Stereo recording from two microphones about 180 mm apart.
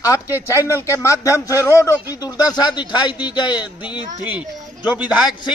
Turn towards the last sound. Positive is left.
turn(degrees=-5)  # may be behind; listen again after turning